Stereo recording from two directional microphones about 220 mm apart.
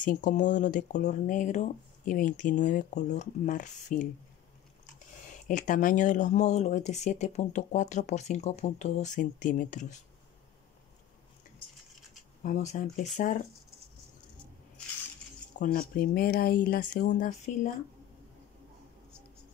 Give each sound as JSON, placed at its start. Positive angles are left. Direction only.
{"t": 0.0, "sound": "speech", "side_deg": 35}
{"t": 5.5, "sound": "speech", "side_deg": 35}
{"t": 12.4, "sound": "speech", "side_deg": 35}
{"t": 15.6, "sound": "speech", "side_deg": 40}